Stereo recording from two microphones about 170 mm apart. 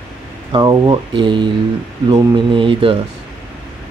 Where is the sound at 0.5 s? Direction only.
25° right (ahead or behind).